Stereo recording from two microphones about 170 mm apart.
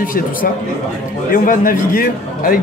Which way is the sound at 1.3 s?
55° left (ahead or behind).